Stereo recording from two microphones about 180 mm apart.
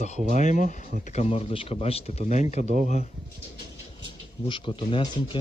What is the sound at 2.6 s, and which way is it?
Speech, 45° right (ahead or behind).